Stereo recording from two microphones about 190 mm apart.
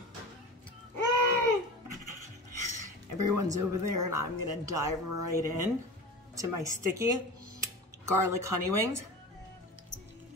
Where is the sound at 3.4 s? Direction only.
15° right (ahead or behind).